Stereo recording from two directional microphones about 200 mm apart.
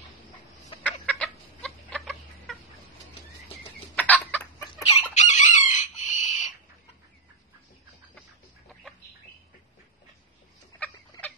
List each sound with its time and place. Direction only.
1.0 s chicken: 5° left (ahead or behind)
3.9 s chicken: 5° left (ahead or behind)
4.8 s chicken: 35° left (ahead or behind)
10.8 s a sound: 5° left (ahead or behind)